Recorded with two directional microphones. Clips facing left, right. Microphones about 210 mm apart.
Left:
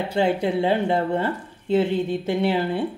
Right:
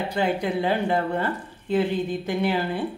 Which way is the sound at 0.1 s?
25° left (ahead or behind).